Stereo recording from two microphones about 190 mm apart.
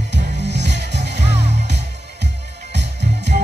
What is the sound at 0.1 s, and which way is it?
Music, 65° right (ahead or behind).